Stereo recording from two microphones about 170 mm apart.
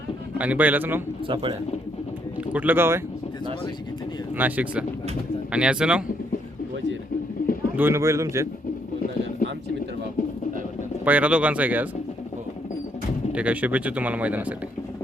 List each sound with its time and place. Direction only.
0.3 s speech: 10° right (ahead or behind)
1.3 s speech: 30° right (ahead or behind)
2.5 s speech: 10° right (ahead or behind)
4.4 s speech: 10° right (ahead or behind)
7.4 s bird: 55° left (ahead or behind)
7.8 s speech: 15° right (ahead or behind)
9.4 s a sound: 55° left (ahead or behind)
11.0 s speech: 10° right (ahead or behind)
13.3 s speech: 10° right (ahead or behind)